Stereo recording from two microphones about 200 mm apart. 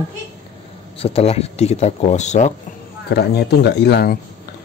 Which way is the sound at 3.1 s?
55° left (ahead or behind).